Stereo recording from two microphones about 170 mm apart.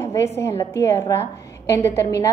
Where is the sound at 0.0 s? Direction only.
15° left (ahead or behind).